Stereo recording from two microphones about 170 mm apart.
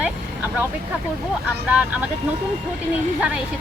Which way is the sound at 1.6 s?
5° right (ahead or behind).